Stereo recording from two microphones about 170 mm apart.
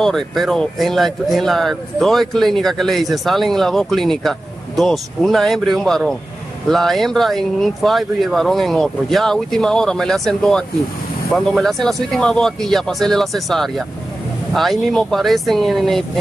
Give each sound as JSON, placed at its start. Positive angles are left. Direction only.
{"t": 0.0, "sound": "speech", "side_deg": 0}